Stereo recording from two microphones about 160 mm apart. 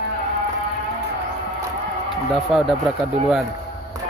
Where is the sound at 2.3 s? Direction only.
Centre (ahead or behind).